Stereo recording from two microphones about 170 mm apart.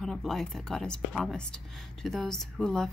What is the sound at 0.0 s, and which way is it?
Speech, centre (ahead or behind).